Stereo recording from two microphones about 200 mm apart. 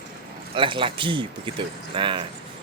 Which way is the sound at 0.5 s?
25° right (ahead or behind).